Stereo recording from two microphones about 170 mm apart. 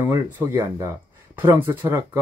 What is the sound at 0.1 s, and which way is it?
Speech, 15° right (ahead or behind).